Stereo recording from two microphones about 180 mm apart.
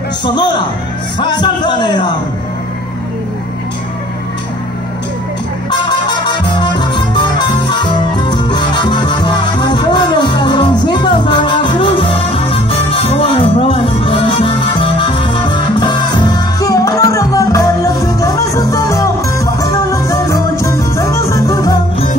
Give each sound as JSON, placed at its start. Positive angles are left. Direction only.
{"t": 1.2, "sound": "a man's voice", "side_deg": 25}
{"t": 5.7, "sound": "music", "side_deg": 25}